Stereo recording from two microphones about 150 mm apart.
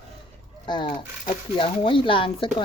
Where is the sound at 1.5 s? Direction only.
35° left (ahead or behind).